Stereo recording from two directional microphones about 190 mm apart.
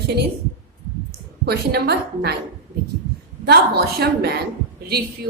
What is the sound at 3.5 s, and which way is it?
Speech, 60° right (ahead or behind).